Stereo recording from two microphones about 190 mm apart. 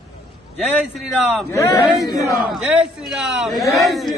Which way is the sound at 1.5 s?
15° left (ahead or behind).